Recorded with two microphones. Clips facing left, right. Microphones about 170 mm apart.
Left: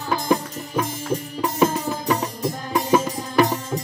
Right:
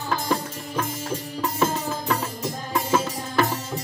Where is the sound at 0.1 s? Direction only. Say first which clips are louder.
Left 5 dB; 15° left (ahead or behind).